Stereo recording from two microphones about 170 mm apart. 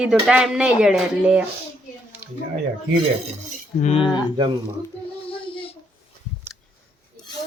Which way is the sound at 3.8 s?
40° left (ahead or behind).